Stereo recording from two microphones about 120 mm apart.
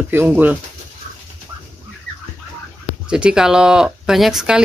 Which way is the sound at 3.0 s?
10° right (ahead or behind).